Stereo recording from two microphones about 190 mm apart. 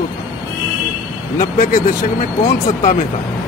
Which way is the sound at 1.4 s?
45° left (ahead or behind).